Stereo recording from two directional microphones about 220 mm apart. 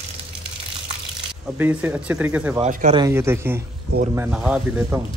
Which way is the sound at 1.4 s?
5° right (ahead or behind).